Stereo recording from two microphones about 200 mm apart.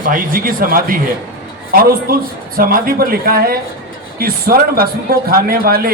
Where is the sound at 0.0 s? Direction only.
45° right (ahead or behind).